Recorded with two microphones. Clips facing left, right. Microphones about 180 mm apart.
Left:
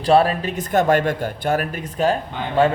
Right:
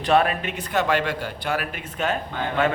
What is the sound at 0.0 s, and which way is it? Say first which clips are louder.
A man's voice: left 4 dB; 30° left (ahead or behind).